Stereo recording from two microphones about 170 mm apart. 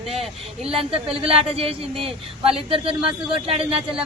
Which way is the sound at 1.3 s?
35° right (ahead or behind).